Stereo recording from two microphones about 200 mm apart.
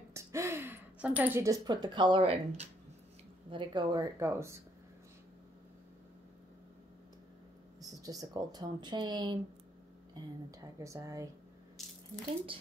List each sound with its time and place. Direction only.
0.1 s speech: 15° right (ahead or behind)
7.8 s speech: 15° right (ahead or behind)